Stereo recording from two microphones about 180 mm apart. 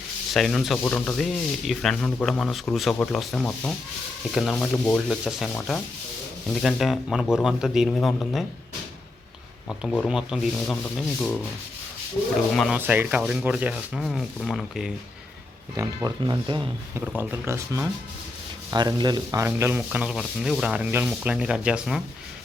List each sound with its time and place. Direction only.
0.3 s speech: centre (ahead or behind)
5.5 s rub: 10° left (ahead or behind)
6.5 s speech: centre (ahead or behind)
9.6 s speech: 5° left (ahead or behind)
12.5 s speech: centre (ahead or behind)
12.8 s speech: 10° right (ahead or behind)
16.0 s speech: 20° right (ahead or behind)
17.2 s speech: 15° right (ahead or behind)